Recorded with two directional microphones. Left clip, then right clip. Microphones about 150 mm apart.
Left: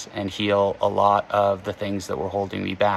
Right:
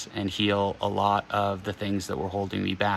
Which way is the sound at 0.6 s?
5° left (ahead or behind).